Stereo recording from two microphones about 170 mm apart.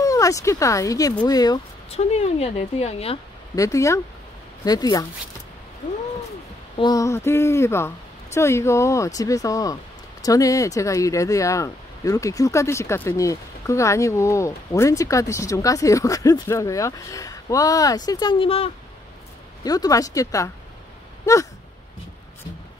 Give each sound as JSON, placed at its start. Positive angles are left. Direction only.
{"t": 0.0, "sound": "speech", "side_deg": 20}
{"t": 1.9, "sound": "a woman's voice", "side_deg": 40}
{"t": 3.5, "sound": "speech", "side_deg": 20}
{"t": 6.8, "sound": "a woman's voice", "side_deg": 20}
{"t": 19.6, "sound": "a woman's voice", "side_deg": 20}